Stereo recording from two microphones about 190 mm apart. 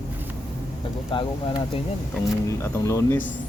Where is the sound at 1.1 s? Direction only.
25° left (ahead or behind).